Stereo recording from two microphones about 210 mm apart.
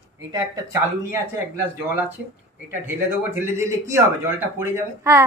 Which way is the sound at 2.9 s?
10° right (ahead or behind).